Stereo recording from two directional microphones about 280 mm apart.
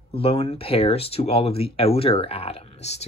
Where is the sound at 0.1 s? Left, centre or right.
Left.